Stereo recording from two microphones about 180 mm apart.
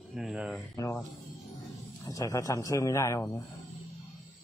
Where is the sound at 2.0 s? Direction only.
20° left (ahead or behind).